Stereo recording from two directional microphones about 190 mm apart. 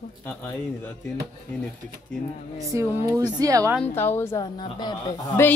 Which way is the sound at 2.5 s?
15° right (ahead or behind).